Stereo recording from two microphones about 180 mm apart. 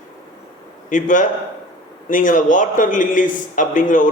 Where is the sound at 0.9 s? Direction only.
45° left (ahead or behind).